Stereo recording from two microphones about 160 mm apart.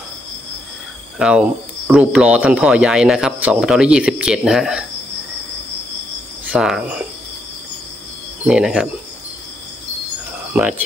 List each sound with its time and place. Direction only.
1.2 s speech: 5° right (ahead or behind)
6.5 s speech: 5° right (ahead or behind)
8.5 s speech: 5° right (ahead or behind)
10.5 s speech: 10° right (ahead or behind)